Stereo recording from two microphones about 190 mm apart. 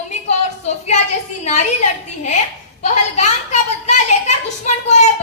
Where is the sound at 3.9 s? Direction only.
35° left (ahead or behind).